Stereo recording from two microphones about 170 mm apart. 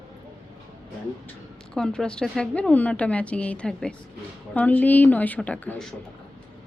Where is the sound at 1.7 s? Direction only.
5° left (ahead or behind).